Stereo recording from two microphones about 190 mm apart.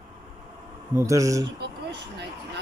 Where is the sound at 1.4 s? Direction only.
65° right (ahead or behind).